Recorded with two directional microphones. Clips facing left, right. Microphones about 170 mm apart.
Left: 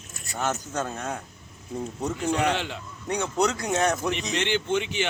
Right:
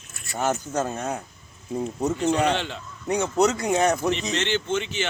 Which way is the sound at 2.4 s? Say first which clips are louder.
Right 2 dB; 10° left (ahead or behind).